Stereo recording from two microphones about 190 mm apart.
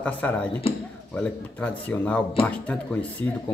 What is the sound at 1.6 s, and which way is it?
Speech, 5° left (ahead or behind).